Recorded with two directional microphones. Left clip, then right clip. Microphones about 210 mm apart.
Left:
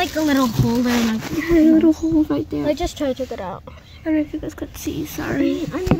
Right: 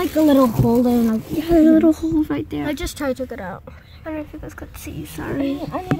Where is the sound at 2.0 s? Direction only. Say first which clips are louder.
Left 2 dB; 15° right (ahead or behind).